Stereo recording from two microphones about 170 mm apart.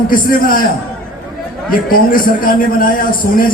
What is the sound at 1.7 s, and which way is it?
A man's voice, 55° left (ahead or behind).